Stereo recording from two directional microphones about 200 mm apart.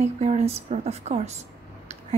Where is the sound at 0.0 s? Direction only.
30° right (ahead or behind).